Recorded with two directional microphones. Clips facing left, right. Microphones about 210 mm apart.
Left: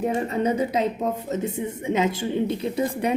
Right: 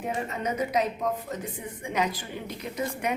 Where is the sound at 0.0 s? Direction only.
35° left (ahead or behind).